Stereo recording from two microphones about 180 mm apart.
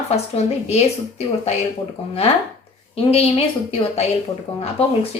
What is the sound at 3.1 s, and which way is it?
Speech, 35° left (ahead or behind).